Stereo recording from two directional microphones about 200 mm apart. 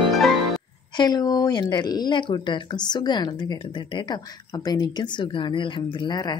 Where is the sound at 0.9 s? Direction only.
20° left (ahead or behind).